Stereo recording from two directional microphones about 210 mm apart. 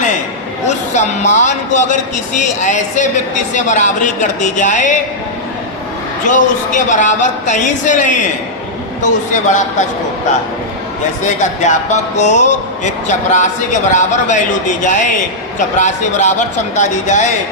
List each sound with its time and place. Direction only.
0.9 s a man's voice: 35° left (ahead or behind)
6.2 s a man's voice: 40° left (ahead or behind)
11.3 s a man's voice: 35° left (ahead or behind)